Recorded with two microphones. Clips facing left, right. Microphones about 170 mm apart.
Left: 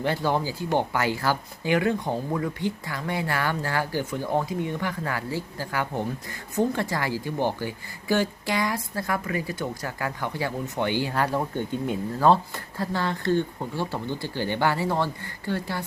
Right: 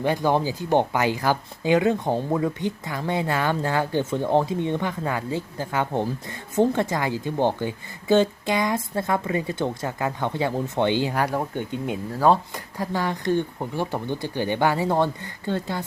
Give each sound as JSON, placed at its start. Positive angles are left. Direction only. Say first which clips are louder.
{"t": 0.0, "sound": "speech", "louder": "right 3 dB", "side_deg": -15}